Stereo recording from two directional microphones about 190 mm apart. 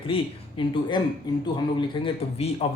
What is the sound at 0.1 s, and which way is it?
A man's voice, 25° left (ahead or behind).